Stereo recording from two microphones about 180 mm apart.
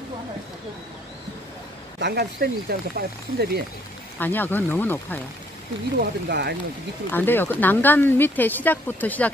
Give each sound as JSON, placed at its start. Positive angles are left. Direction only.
{"t": 2.0, "sound": "speech", "side_deg": -65}
{"t": 4.2, "sound": "speech", "side_deg": 10}
{"t": 5.9, "sound": "speech", "side_deg": -65}
{"t": 7.1, "sound": "speech", "side_deg": 10}